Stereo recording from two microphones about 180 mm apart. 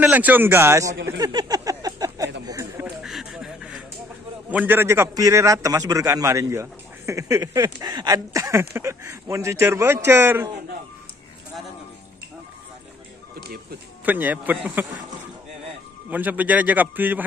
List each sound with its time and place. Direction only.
0.0 s a man's voice: 10° right (ahead or behind)
1.0 s a sound: 20° right (ahead or behind)
3.0 s a sound: centre (ahead or behind)
4.5 s a man's voice: 10° right (ahead or behind)
14.0 s a man's voice: 10° right (ahead or behind)
16.1 s a man's voice: 10° right (ahead or behind)